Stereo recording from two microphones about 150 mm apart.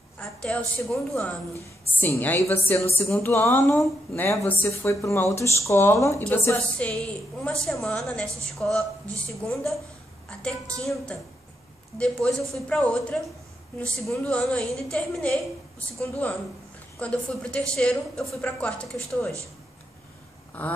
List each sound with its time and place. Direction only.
0.2 s a woman's voice: 5° left (ahead or behind)
2.0 s a woman's voice: 15° left (ahead or behind)
6.9 s a woman's voice: 5° left (ahead or behind)
20.6 s a woman's voice: 10° left (ahead or behind)